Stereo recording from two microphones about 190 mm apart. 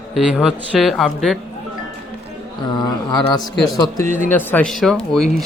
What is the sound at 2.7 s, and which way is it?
Speech, 20° left (ahead or behind).